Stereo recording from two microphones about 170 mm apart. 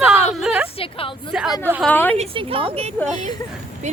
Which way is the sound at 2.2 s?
35° right (ahead or behind).